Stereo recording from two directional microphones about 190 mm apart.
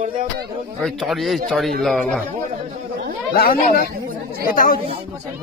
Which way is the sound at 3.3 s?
50° left (ahead or behind).